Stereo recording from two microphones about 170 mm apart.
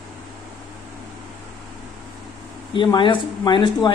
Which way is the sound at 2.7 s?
30° left (ahead or behind).